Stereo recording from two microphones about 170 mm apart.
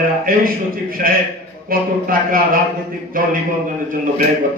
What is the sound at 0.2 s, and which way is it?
A man's voice, 60° right (ahead or behind).